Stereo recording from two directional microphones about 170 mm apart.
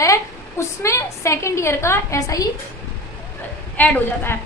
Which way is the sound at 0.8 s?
15° left (ahead or behind).